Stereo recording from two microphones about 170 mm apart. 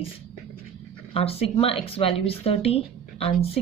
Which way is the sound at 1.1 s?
35° left (ahead or behind).